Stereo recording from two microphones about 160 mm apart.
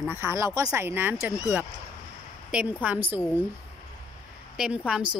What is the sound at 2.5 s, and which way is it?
Speech, 10° right (ahead or behind).